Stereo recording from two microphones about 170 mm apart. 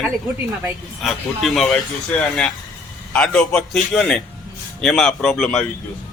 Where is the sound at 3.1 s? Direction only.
5° left (ahead or behind).